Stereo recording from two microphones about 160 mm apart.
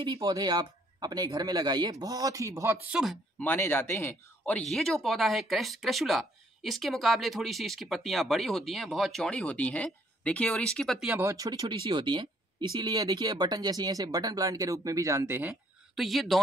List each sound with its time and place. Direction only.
0.0 s speech: 25° right (ahead or behind); by 3.2 s 5° right (ahead or behind)
3.3 s speech: 15° left (ahead or behind)
11.1 s speech: 15° right (ahead or behind)
15.9 s speech: centre (ahead or behind)